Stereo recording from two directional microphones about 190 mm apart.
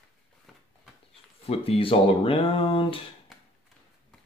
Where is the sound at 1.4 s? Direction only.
30° left (ahead or behind).